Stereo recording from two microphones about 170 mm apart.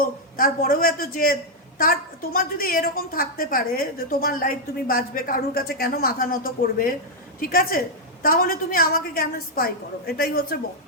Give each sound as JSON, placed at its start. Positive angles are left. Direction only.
{"t": 0.0, "sound": "a woman's voice", "side_deg": 55}